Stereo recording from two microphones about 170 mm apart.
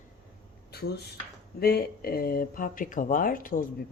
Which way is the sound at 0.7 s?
70° left (ahead or behind).